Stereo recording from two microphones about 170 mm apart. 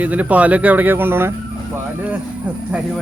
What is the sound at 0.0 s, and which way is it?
Speech, 10° right (ahead or behind).